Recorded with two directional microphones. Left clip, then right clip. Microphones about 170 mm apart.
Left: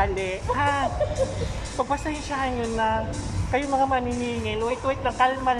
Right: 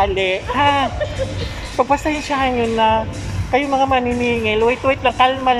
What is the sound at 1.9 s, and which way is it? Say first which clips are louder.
A woman's voice: right 10 dB; 15° right (ahead or behind).